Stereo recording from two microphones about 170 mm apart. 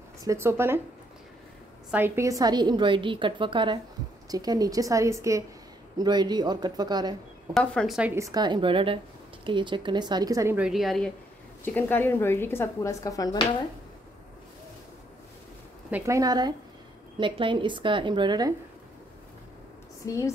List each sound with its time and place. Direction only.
0.2 s speech: 15° right (ahead or behind)
1.9 s a woman's voice: 10° right (ahead or behind)
7.5 s speech: centre (ahead or behind)
8.1 s a woman's voice: 20° right (ahead or behind)
10.6 s speech: centre (ahead or behind)
11.6 s speech: 10° left (ahead or behind)
15.9 s a woman's voice: 20° right (ahead or behind)
20.1 s speech: 20° left (ahead or behind)